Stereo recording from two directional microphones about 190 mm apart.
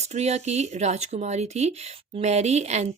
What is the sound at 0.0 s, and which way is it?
Speech, 35° right (ahead or behind).